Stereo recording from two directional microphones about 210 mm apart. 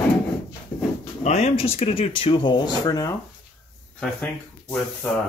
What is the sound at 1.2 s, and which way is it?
Speech, 30° left (ahead or behind).